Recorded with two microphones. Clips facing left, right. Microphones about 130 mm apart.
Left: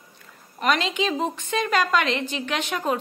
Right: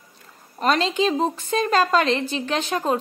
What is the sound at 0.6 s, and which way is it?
A woman's voice, 35° right (ahead or behind).